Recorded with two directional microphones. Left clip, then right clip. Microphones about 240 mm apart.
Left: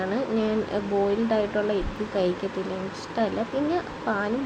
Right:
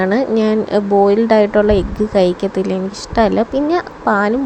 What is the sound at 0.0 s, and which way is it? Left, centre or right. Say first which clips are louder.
Speech: right 11 dB; right.